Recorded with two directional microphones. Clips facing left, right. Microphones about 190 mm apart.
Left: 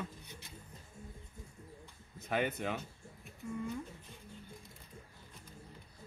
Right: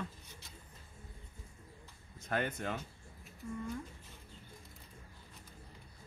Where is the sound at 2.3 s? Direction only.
5° left (ahead or behind).